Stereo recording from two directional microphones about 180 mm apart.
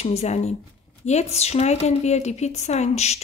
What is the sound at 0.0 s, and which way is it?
Speech, 35° left (ahead or behind).